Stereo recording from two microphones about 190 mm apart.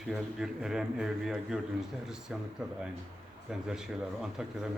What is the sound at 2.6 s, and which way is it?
A man's voice, 5° right (ahead or behind).